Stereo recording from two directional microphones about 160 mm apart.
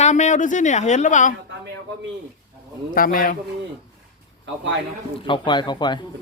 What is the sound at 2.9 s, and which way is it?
Speech, 60° left (ahead or behind).